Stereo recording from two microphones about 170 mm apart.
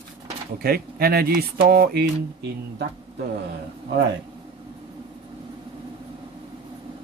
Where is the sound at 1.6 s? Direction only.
65° right (ahead or behind).